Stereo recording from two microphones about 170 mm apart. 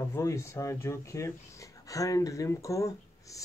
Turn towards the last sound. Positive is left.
turn(degrees=20)  # may be behind; listen again after turning